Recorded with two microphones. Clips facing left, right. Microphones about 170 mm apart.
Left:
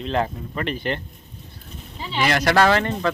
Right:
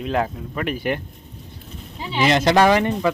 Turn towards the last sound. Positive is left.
turn(degrees=-15)  # may be behind; listen again after turning